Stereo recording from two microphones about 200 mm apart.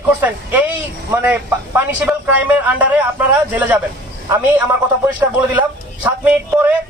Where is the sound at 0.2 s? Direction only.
10° right (ahead or behind).